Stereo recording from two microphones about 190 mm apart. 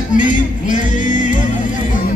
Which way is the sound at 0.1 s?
45° left (ahead or behind).